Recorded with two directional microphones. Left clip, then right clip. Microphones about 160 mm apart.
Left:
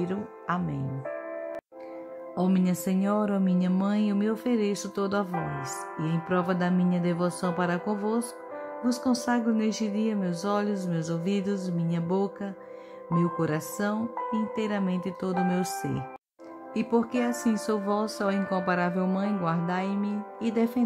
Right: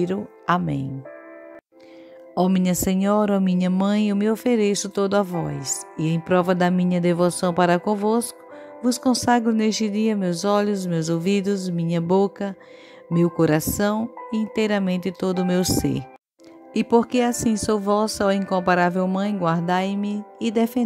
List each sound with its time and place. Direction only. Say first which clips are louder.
0.0 s speech: right 7 dB; 45° right (ahead or behind)
2.3 s speech: right 7 dB; 50° right (ahead or behind)